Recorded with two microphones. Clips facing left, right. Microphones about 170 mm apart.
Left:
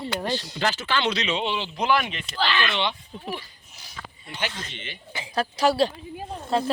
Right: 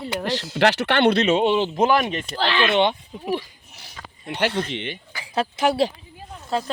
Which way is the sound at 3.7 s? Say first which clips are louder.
Even; 65° right (ahead or behind).